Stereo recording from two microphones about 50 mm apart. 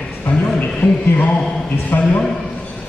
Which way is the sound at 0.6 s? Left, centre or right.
Left.